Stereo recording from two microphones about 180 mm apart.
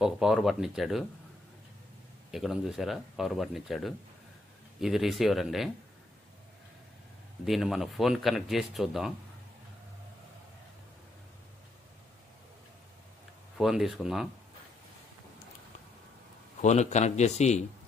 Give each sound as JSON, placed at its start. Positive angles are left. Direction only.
{"t": 0.0, "sound": "speech", "side_deg": -5}
{"t": 2.3, "sound": "speech", "side_deg": 0}
{"t": 7.4, "sound": "speech", "side_deg": 0}
{"t": 13.6, "sound": "speech", "side_deg": 0}
{"t": 16.6, "sound": "a man's voice", "side_deg": 40}